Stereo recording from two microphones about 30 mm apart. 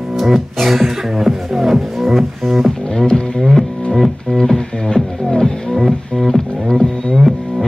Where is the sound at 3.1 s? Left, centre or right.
Left.